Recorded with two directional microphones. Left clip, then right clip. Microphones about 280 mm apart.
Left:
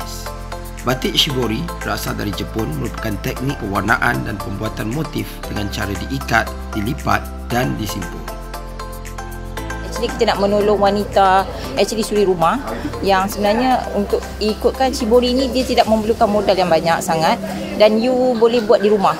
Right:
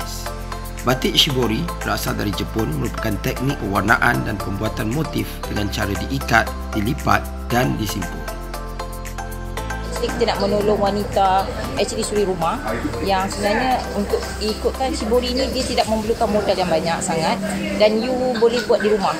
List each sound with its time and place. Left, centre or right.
0.8 s speech: centre
10.0 s speech: left